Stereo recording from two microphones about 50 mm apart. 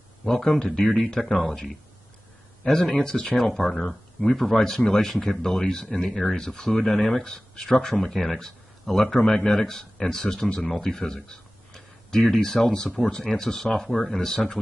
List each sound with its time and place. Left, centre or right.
0.2 s speech: centre